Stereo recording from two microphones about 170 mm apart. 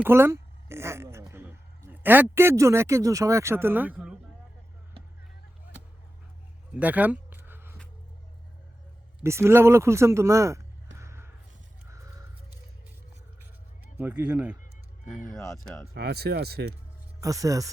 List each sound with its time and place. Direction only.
0.0 s a sound: 15° right (ahead or behind)
1.3 s a man's voice: 15° right (ahead or behind)
6.7 s a sound: 10° right (ahead or behind)
9.2 s speech: 15° right (ahead or behind)
10.9 s music: 15° right (ahead or behind)
11.9 s caw: 20° right (ahead or behind)
13.9 s speech: 10° right (ahead or behind)
15.4 s speech: 15° left (ahead or behind)
16.0 s speech: 70° right (ahead or behind)
17.2 s speech: 20° right (ahead or behind)